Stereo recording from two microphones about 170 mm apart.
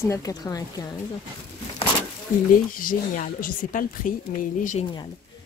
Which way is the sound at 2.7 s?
50° left (ahead or behind).